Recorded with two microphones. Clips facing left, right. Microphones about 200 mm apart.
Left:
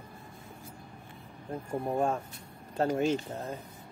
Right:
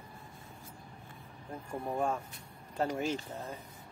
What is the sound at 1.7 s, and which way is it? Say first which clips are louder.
Speech: left 4 dB; 25° left (ahead or behind).